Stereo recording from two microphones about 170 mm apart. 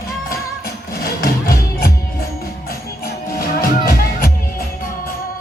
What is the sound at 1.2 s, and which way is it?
Music, 60° left (ahead or behind).